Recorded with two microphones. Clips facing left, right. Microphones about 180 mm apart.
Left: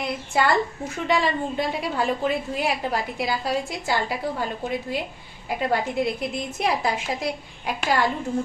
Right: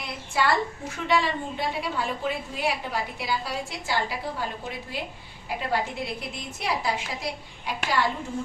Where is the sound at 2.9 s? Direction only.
45° left (ahead or behind).